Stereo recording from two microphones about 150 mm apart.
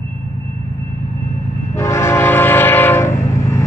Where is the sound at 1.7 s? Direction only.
20° left (ahead or behind).